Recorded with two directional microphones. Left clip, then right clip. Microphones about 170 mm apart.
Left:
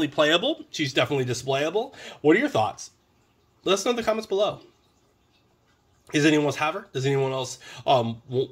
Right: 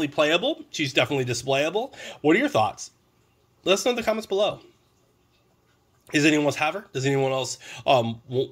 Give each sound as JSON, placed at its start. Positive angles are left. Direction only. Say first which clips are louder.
{"t": 0.0, "sound": "speech", "louder": "left 1 dB", "side_deg": -10}
{"t": 0.7, "sound": "speech", "louder": "right 1 dB", "side_deg": -25}
{"t": 6.0, "sound": "speech", "louder": "even", "side_deg": -30}